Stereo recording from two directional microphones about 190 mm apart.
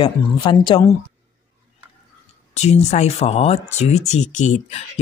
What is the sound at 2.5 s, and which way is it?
Speech, 35° left (ahead or behind).